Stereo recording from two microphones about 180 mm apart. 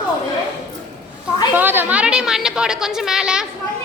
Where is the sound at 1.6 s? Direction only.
10° right (ahead or behind).